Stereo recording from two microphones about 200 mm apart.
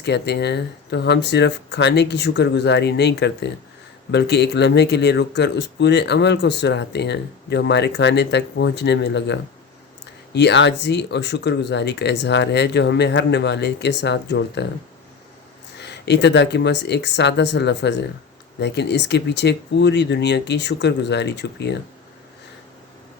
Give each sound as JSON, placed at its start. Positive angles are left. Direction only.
{"t": 0.0, "sound": "speech", "side_deg": 60}
{"t": 15.8, "sound": "speech", "side_deg": 60}